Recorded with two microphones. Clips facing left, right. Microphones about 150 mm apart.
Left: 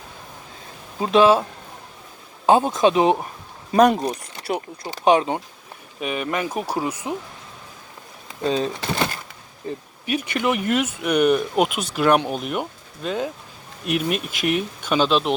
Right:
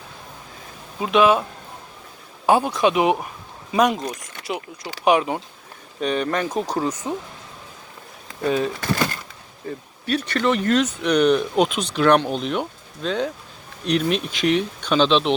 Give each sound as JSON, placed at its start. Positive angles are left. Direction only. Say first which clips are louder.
{"t": 0.9, "sound": "speech", "louder": "left 2 dB", "side_deg": 30}
{"t": 2.5, "sound": "speech", "louder": "left 1 dB", "side_deg": 20}
{"t": 3.7, "sound": "speech", "louder": "left 4 dB", "side_deg": 40}
{"t": 4.5, "sound": "speech", "louder": "left 3 dB", "side_deg": 45}
{"t": 4.9, "sound": "speech", "louder": "left 1 dB", "side_deg": 25}
{"t": 6.0, "sound": "speech", "louder": "right 3 dB", "side_deg": 5}
{"t": 8.4, "sound": "speech", "louder": "right 1 dB", "side_deg": 25}
{"t": 9.6, "sound": "speech", "louder": "right 1 dB", "side_deg": 10}